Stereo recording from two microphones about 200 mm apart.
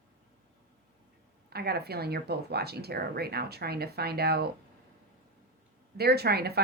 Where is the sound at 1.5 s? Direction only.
50° right (ahead or behind).